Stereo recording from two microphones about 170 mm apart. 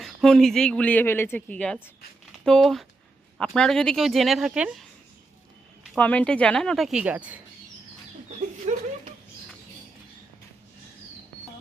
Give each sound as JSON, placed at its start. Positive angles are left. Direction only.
{"t": 0.0, "sound": "speech", "side_deg": 0}
{"t": 5.9, "sound": "speech", "side_deg": 10}
{"t": 8.7, "sound": "speech", "side_deg": -45}